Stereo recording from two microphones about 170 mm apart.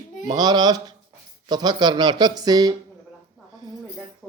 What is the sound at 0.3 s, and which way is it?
Speech, 25° right (ahead or behind).